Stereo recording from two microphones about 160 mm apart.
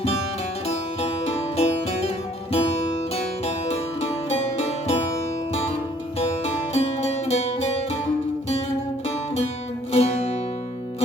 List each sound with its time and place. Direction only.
1.5 s music: 40° left (ahead or behind)
6.1 s music: 40° left (ahead or behind)
9.0 s music: 40° left (ahead or behind)